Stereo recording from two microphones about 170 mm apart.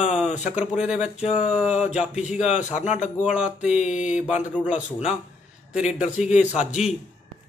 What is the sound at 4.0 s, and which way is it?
Speech, 5° right (ahead or behind).